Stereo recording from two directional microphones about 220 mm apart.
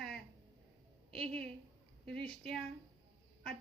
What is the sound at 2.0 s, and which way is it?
Speech, 5° left (ahead or behind).